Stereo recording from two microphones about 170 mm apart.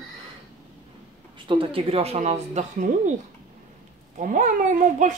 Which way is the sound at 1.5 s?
30° right (ahead or behind).